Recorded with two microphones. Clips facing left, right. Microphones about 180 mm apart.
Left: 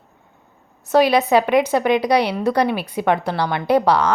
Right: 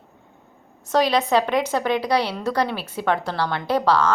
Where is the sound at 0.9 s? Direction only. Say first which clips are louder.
Left 4 dB; 10° left (ahead or behind).